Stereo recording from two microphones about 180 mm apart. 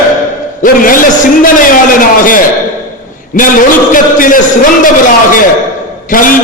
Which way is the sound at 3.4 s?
50° left (ahead or behind).